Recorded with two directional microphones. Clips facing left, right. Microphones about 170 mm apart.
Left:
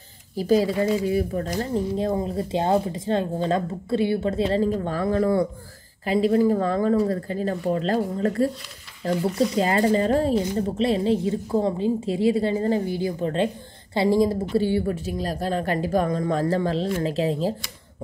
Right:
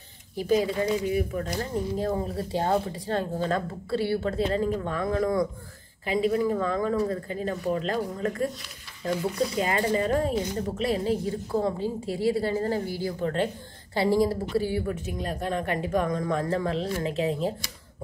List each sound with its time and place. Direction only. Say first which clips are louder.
0.4 s speech: left 4 dB; 35° left (ahead or behind)
2.0 s a woman's voice: left 4 dB; 20° left (ahead or behind)
4.5 s speech: left 4 dB; 35° left (ahead or behind)
9.6 s a woman's voice: left 5 dB; 35° left (ahead or behind)